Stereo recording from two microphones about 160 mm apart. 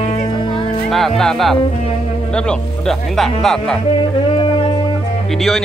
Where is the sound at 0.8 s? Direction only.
Centre (ahead or behind).